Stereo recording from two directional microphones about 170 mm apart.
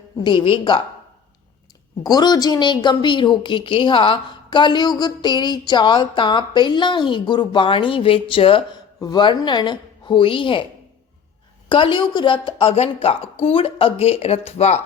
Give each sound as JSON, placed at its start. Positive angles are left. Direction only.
{"t": 0.2, "sound": "a woman's voice", "side_deg": 30}
{"t": 2.0, "sound": "a woman's voice", "side_deg": 25}
{"t": 11.7, "sound": "a woman's voice", "side_deg": 30}